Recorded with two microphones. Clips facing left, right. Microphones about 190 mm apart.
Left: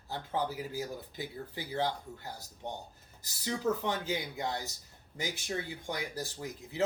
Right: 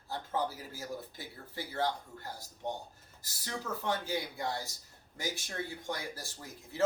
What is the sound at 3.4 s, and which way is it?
Speech, 20° left (ahead or behind).